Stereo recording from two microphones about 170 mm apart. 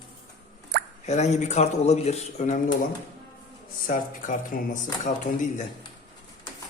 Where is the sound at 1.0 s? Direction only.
40° left (ahead or behind).